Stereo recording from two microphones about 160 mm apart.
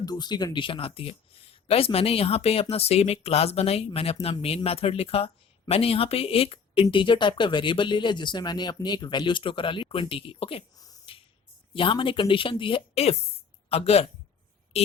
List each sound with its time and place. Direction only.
0.0 s speech: 25° left (ahead or behind)
11.1 s finger snapping: 35° left (ahead or behind)
11.7 s speech: 35° left (ahead or behind)